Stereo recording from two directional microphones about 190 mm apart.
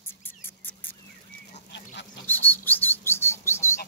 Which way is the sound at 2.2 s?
10° left (ahead or behind).